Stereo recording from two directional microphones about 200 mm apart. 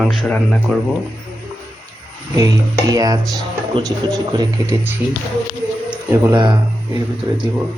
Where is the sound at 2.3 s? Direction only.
15° right (ahead or behind).